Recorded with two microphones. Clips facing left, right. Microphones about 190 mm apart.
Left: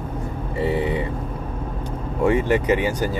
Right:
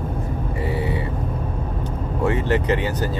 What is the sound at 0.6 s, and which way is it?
Speech, 20° left (ahead or behind).